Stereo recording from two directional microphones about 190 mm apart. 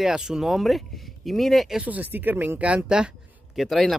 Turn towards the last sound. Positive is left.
turn(degrees=0)  # may be behind; listen again after turning